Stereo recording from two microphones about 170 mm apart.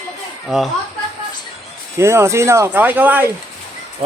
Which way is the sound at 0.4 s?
Centre (ahead or behind).